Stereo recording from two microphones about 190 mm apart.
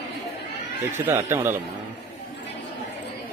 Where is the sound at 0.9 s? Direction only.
10° right (ahead or behind).